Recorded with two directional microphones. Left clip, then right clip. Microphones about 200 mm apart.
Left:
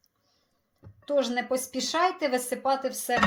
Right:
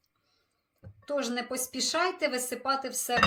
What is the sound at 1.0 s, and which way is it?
A woman's voice, 15° left (ahead or behind).